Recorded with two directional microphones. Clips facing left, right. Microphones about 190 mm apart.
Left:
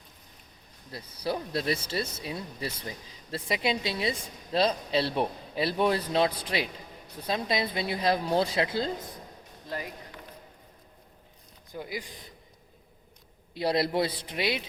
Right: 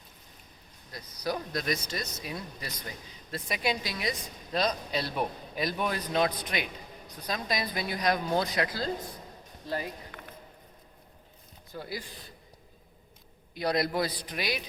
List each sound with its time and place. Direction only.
0.9 s a man's voice: 30° left (ahead or behind)
11.7 s speech: 15° left (ahead or behind)
13.5 s a man's voice: 25° left (ahead or behind)